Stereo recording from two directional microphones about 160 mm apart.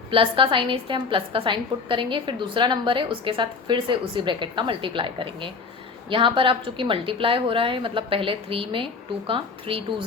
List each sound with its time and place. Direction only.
0.1 s a woman's voice: 35° right (ahead or behind)